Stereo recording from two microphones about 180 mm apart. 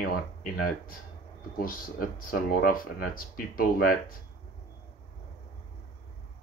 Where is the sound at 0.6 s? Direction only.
55° left (ahead or behind).